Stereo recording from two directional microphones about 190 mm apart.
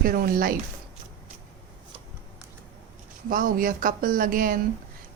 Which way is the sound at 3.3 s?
45° right (ahead or behind).